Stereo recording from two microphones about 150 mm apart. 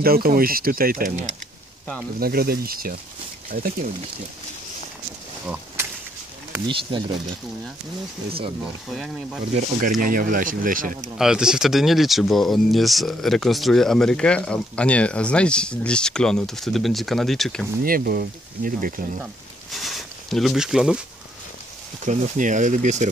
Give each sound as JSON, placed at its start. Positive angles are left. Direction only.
{"t": 0.0, "sound": "speech", "side_deg": -85}
{"t": 2.1, "sound": "speech", "side_deg": -90}
{"t": 6.7, "sound": "speech", "side_deg": -35}
{"t": 8.3, "sound": "speech", "side_deg": -40}
{"t": 8.9, "sound": "speech", "side_deg": 0}
{"t": 9.6, "sound": "speech", "side_deg": -60}
{"t": 11.1, "sound": "speech", "side_deg": -5}
{"t": 17.8, "sound": "speech", "side_deg": -70}
{"t": 19.7, "sound": "a sound", "side_deg": 0}
{"t": 22.0, "sound": "speech", "side_deg": -55}